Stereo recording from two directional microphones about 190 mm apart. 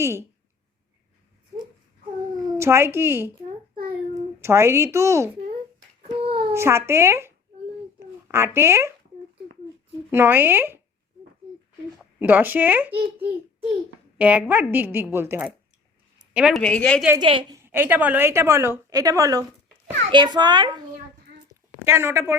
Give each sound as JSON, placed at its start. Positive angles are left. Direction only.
{"t": 0.0, "sound": "a woman's voice", "side_deg": -15}
{"t": 2.5, "sound": "a woman's voice", "side_deg": -15}
{"t": 4.4, "sound": "a woman's voice", "side_deg": -15}
{"t": 6.1, "sound": "a sound", "side_deg": -25}
{"t": 6.5, "sound": "speech", "side_deg": -15}
{"t": 7.9, "sound": "a sound", "side_deg": -15}
{"t": 10.1, "sound": "a woman's voice", "side_deg": -10}
{"t": 12.2, "sound": "a woman's voice", "side_deg": -10}
{"t": 14.2, "sound": "a woman's voice", "side_deg": -10}
{"t": 16.1, "sound": "a sound", "side_deg": -5}
{"t": 16.6, "sound": "a woman's voice", "side_deg": 5}
{"t": 17.2, "sound": "a child's voice", "side_deg": -25}
{"t": 17.6, "sound": "a woman's voice", "side_deg": -10}
{"t": 21.8, "sound": "a woman's voice", "side_deg": -10}